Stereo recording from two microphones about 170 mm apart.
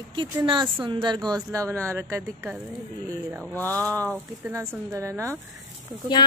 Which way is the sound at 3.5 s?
10° left (ahead or behind).